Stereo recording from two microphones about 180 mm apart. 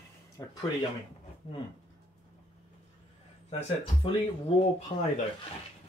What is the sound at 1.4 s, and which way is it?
Speech, 35° left (ahead or behind).